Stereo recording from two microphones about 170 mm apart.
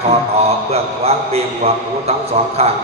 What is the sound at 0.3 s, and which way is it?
A man's voice, 35° right (ahead or behind).